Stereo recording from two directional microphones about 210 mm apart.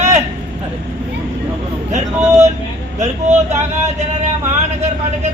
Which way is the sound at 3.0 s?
35° right (ahead or behind).